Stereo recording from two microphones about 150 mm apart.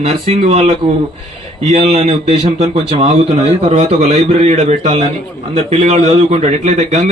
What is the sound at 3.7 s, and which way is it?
A man's voice, 45° right (ahead or behind).